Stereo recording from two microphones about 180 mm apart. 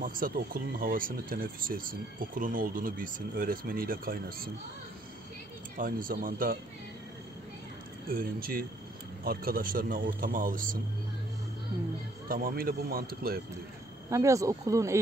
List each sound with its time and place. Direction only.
0.0 s speech: 50° right (ahead or behind)
5.8 s speech: 50° right (ahead or behind)
8.1 s speech: 55° right (ahead or behind)
12.3 s speech: 55° right (ahead or behind)
14.1 s speech: 15° right (ahead or behind)